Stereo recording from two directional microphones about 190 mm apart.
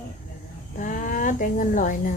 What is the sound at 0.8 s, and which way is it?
Speech, 45° left (ahead or behind).